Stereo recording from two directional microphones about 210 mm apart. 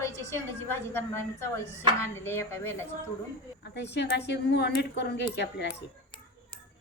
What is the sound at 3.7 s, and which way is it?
A woman's voice, 55° left (ahead or behind).